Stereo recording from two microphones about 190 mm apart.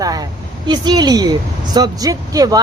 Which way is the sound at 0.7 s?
20° right (ahead or behind).